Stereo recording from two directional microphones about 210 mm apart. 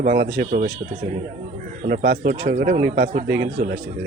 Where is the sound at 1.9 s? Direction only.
45° right (ahead or behind).